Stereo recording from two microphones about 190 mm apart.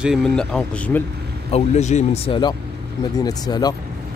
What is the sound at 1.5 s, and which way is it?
Speech, 35° left (ahead or behind).